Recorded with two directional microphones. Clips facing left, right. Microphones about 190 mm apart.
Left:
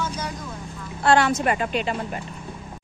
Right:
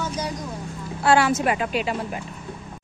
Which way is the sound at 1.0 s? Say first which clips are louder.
Even; 5° right (ahead or behind).